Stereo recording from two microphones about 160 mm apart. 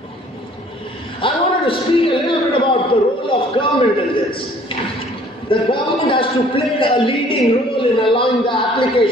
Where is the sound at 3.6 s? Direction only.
35° left (ahead or behind).